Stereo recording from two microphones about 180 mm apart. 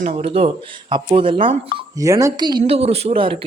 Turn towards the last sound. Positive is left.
turn(degrees=-30)  # may be behind; listen again after turning